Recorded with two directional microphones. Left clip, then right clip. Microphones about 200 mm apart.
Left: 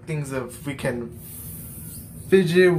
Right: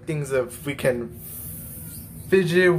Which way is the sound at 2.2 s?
15° right (ahead or behind).